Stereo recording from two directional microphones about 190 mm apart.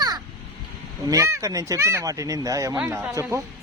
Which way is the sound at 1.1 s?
15° right (ahead or behind).